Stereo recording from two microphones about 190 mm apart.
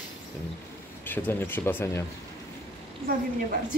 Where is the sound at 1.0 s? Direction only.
10° left (ahead or behind).